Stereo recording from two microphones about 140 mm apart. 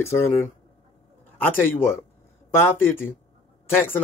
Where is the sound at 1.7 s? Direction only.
15° left (ahead or behind).